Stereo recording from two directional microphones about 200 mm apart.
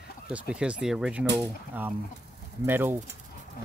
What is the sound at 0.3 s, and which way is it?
Speech, 5° right (ahead or behind).